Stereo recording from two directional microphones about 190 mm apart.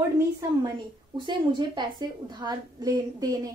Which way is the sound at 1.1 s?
25° right (ahead or behind).